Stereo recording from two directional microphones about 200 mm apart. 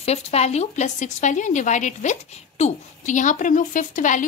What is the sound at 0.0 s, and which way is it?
A woman's voice, 30° left (ahead or behind).